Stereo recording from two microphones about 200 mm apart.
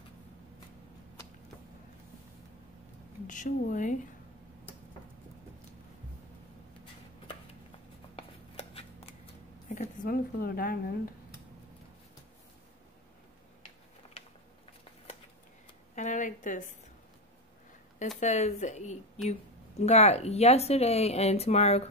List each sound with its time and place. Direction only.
3.3 s speech: 40° left (ahead or behind)
8.2 s shuffling cards: 30° left (ahead or behind)
9.8 s a woman's voice: 45° left (ahead or behind)
15.9 s a sound: 40° left (ahead or behind)
18.2 s speech: 35° left (ahead or behind)